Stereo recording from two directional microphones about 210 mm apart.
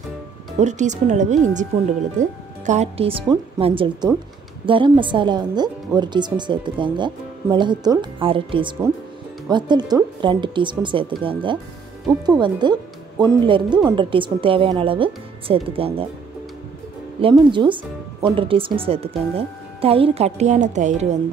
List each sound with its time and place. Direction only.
0.6 s a woman's voice: 35° right (ahead or behind)
17.2 s a woman's voice: 20° right (ahead or behind)